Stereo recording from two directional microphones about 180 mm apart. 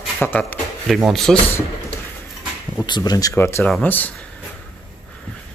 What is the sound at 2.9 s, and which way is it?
Speech, 20° left (ahead or behind).